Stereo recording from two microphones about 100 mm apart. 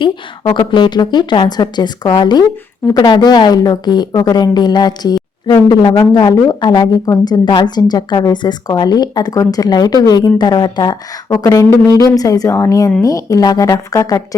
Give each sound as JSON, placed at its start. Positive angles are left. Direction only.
{"t": 0.0, "sound": "speech", "side_deg": 50}